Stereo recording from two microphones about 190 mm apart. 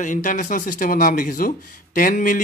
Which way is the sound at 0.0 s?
45° left (ahead or behind).